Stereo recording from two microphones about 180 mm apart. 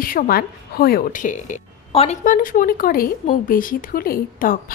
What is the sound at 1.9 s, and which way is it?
Speech, 30° left (ahead or behind).